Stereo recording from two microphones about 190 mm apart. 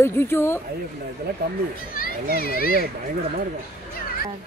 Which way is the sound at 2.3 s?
50° left (ahead or behind).